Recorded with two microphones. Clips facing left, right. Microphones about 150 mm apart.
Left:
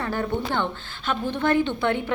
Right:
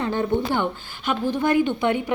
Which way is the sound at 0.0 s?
20° right (ahead or behind).